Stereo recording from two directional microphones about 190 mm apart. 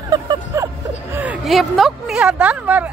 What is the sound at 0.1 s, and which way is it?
Vehicle, 20° right (ahead or behind).